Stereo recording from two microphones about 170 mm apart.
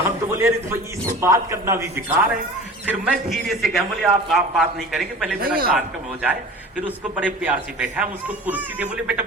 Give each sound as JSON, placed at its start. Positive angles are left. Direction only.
{"t": 0.0, "sound": "speech", "side_deg": -15}
{"t": 2.8, "sound": "a man's voice", "side_deg": -5}
{"t": 5.4, "sound": "a man's voice", "side_deg": -60}
{"t": 6.8, "sound": "speech", "side_deg": -10}